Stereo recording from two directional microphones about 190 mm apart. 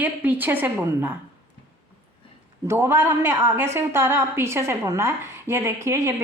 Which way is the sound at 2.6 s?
15° right (ahead or behind).